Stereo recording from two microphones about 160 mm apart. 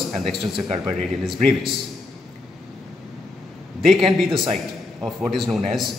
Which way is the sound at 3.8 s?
Centre (ahead or behind).